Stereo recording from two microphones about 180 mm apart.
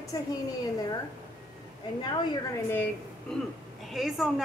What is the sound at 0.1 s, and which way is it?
Speech, 20° left (ahead or behind).